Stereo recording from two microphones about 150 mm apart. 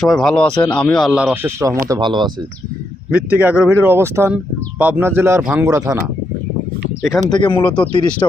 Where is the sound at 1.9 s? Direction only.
30° right (ahead or behind).